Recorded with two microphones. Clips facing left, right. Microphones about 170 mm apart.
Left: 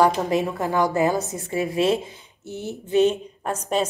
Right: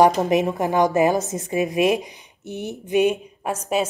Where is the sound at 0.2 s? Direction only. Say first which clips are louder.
Right 3 dB; 20° right (ahead or behind).